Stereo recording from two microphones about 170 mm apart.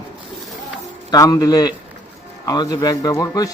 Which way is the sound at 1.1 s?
20° left (ahead or behind).